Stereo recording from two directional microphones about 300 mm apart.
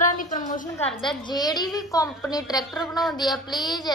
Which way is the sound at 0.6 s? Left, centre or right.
Centre.